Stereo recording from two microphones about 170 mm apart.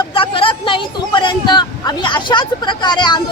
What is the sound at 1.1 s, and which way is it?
A woman's voice, 30° left (ahead or behind).